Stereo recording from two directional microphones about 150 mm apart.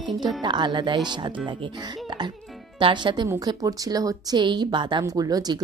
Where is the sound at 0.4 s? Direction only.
30° right (ahead or behind).